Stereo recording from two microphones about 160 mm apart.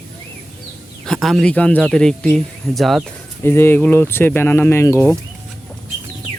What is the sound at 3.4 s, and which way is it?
Speech, 15° left (ahead or behind).